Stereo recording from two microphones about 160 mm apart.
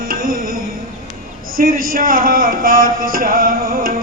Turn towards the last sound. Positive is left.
turn(degrees=-65)  # may be behind; listen again after turning